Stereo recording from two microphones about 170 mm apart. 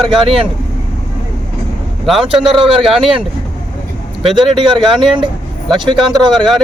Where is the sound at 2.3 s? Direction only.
30° right (ahead or behind).